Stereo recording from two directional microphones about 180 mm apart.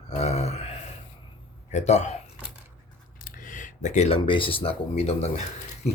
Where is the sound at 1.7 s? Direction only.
40° left (ahead or behind).